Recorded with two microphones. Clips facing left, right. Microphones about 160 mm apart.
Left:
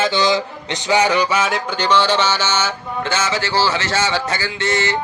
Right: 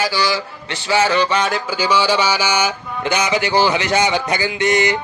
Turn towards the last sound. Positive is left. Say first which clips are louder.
# right 4 dB
turn(degrees=-15)  # may be behind; listen again after turning